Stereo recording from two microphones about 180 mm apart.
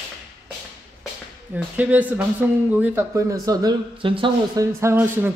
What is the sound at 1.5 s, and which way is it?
Speech, 10° right (ahead or behind).